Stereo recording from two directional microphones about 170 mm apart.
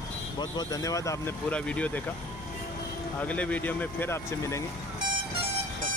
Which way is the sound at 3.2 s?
10° left (ahead or behind).